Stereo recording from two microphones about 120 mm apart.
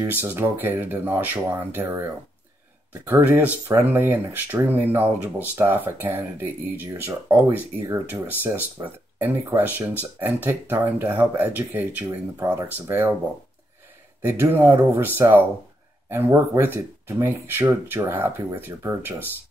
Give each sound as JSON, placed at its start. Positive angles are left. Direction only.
{"t": 0.1, "sound": "speech", "side_deg": -20}
{"t": 14.2, "sound": "speech", "side_deg": -20}